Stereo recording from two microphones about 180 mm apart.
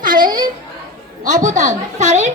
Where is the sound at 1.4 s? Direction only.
45° right (ahead or behind).